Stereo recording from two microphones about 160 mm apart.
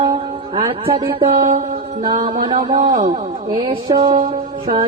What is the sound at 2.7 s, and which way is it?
Speech, 35° right (ahead or behind).